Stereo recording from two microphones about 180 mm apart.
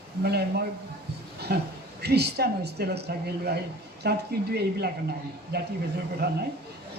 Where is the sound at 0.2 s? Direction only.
65° right (ahead or behind).